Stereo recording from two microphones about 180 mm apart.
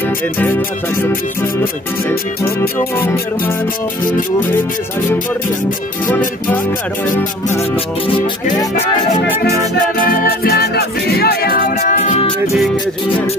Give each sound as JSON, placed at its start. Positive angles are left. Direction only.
{"t": 0.9, "sound": "music", "side_deg": 10}
{"t": 6.0, "sound": "music", "side_deg": 10}
{"t": 9.3, "sound": "music", "side_deg": -15}
{"t": 10.2, "sound": "music", "side_deg": 60}